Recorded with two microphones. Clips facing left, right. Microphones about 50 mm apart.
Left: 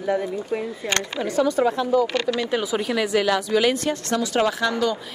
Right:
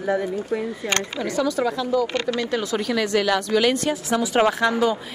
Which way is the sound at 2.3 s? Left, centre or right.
Centre.